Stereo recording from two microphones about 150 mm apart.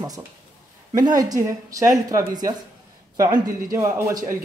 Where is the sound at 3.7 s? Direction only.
20° right (ahead or behind).